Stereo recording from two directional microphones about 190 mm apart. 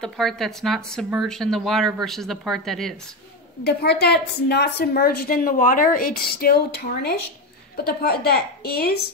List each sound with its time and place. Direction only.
0.0 s speech: centre (ahead or behind)
3.6 s a woman's voice: 60° left (ahead or behind)